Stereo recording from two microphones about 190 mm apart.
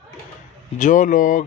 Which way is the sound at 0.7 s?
40° left (ahead or behind).